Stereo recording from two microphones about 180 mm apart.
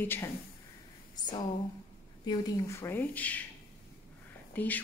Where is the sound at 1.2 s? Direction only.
25° left (ahead or behind).